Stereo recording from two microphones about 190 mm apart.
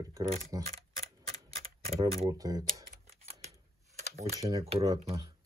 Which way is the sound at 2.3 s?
20° right (ahead or behind).